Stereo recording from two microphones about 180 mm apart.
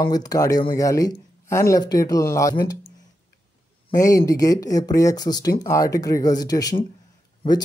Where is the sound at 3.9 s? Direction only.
20° left (ahead or behind).